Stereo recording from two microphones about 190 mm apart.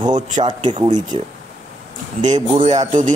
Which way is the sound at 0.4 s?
30° right (ahead or behind).